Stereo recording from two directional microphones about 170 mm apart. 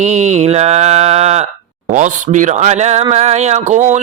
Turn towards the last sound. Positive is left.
turn(degrees=-45)  # may be behind; listen again after turning